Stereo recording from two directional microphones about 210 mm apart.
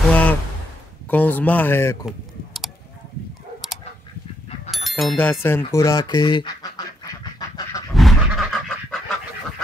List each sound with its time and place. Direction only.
0.1 s a sound: 5° left (ahead or behind)
1.1 s speech: 5° left (ahead or behind)
2.0 s typing: centre (ahead or behind)
4.6 s speech: centre (ahead or behind); by 6.7 s 20° left (ahead or behind)
7.3 s duck: 20° left (ahead or behind)
7.9 s goat: centre (ahead or behind)